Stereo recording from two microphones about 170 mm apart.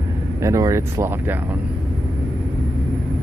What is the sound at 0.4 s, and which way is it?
Speech, 20° right (ahead or behind).